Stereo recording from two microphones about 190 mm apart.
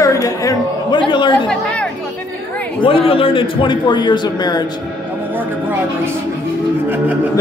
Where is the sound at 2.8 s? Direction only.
30° left (ahead or behind).